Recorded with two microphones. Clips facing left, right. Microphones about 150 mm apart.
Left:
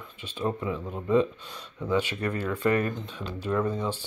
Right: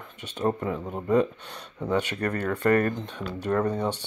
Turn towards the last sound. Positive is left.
turn(degrees=-70)  # may be behind; listen again after turning